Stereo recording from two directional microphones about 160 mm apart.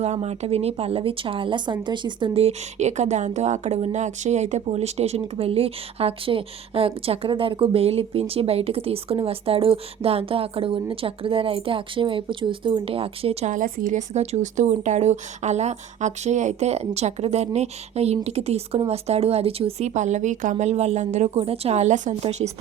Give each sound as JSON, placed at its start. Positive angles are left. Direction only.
{"t": 0.0, "sound": "a woman's voice", "side_deg": -40}
{"t": 13.5, "sound": "speech", "side_deg": -55}